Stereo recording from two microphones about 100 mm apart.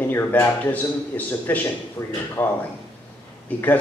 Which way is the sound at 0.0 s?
20° left (ahead or behind).